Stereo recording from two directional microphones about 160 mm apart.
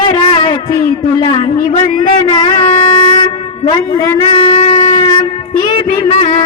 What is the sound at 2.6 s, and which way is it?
Wind instrument, 40° left (ahead or behind).